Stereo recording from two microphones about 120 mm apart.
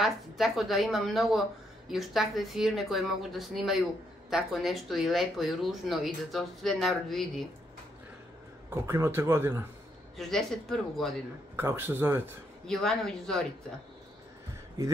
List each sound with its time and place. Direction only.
0.0 s speech: centre (ahead or behind)
8.6 s speech: 20° right (ahead or behind)
10.1 s speech: centre (ahead or behind)
11.5 s speech: 20° right (ahead or behind)
12.6 s speech: 5° left (ahead or behind)